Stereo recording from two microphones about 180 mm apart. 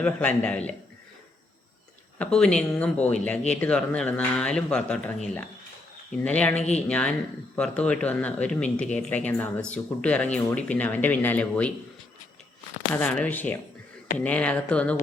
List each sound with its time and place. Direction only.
0.0 s speech: 5° left (ahead or behind)
2.1 s speech: 5° left (ahead or behind)
6.2 s speech: 5° left (ahead or behind)
6.6 s speech: 40° left (ahead or behind)
6.8 s speech: 5° left (ahead or behind)
12.9 s speech: 10° left (ahead or behind)